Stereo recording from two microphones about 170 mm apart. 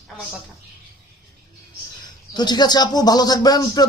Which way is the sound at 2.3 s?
25° left (ahead or behind).